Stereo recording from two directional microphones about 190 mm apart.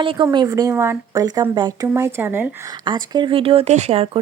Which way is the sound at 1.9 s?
10° right (ahead or behind).